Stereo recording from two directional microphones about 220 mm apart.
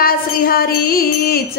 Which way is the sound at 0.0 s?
40° left (ahead or behind).